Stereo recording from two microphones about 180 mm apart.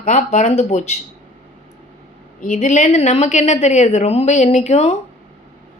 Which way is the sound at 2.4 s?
40° left (ahead or behind).